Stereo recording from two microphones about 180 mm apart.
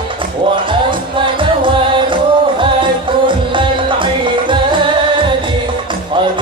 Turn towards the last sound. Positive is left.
turn(degrees=-25)  # may be behind; listen again after turning